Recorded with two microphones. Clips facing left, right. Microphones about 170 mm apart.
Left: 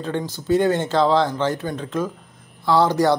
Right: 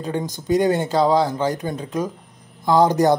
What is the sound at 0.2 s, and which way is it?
Speech, 15° right (ahead or behind).